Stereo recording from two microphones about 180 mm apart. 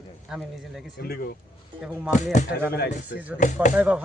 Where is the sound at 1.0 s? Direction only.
60° left (ahead or behind).